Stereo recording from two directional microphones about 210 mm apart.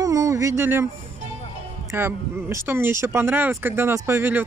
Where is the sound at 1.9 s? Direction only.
10° right (ahead or behind).